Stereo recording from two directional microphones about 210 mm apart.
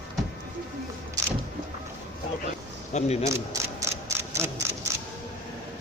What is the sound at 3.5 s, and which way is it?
Camera, 15° right (ahead or behind).